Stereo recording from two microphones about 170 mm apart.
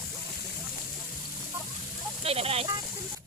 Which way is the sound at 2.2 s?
35° right (ahead or behind).